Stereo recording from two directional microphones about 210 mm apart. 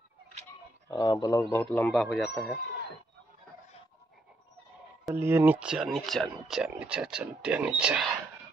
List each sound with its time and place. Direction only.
0.8 s speech: 20° left (ahead or behind)
1.9 s speech: 5° left (ahead or behind)
5.0 s speech: 10° right (ahead or behind)